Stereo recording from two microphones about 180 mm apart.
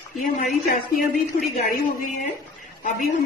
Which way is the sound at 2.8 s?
45° left (ahead or behind).